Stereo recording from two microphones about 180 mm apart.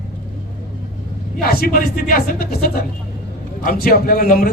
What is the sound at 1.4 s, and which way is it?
A man's voice, 55° left (ahead or behind).